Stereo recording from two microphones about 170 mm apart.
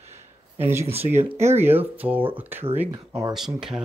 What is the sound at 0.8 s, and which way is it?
Speech, 35° right (ahead or behind).